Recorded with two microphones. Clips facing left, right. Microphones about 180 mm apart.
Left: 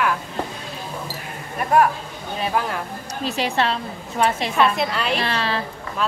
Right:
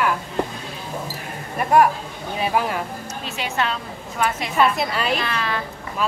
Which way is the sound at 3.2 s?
35° left (ahead or behind).